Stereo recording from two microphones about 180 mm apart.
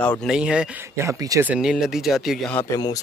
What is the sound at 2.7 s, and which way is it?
Speech, 20° left (ahead or behind).